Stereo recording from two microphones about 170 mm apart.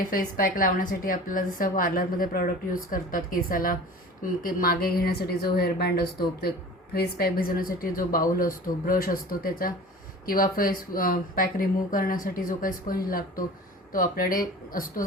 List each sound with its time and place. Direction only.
0.1 s a woman's voice: 55° left (ahead or behind)